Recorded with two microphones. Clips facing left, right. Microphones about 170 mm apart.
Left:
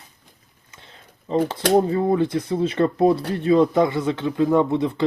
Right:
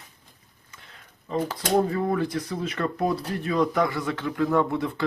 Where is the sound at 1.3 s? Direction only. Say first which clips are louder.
Left 6 dB; 25° left (ahead or behind).